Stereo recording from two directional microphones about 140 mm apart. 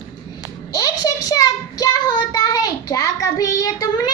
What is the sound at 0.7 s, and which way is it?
Child singing, 25° left (ahead or behind).